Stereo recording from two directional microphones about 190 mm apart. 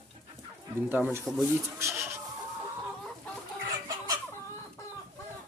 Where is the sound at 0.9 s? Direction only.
10° right (ahead or behind).